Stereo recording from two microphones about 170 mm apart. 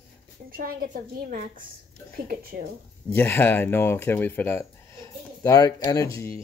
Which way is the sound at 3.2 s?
10° left (ahead or behind).